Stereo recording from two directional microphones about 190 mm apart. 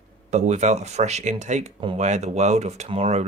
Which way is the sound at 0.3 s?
35° right (ahead or behind).